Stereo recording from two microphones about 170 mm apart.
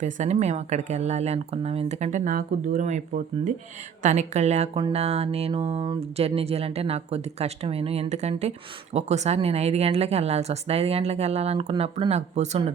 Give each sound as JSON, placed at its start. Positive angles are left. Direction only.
{"t": 0.0, "sound": "speech", "side_deg": -40}
{"t": 4.0, "sound": "speech", "side_deg": -40}